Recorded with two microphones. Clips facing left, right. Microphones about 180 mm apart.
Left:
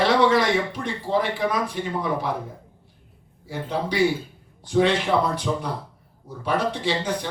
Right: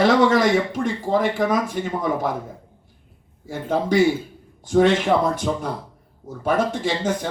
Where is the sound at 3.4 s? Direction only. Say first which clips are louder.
Right 4 dB; 50° right (ahead or behind).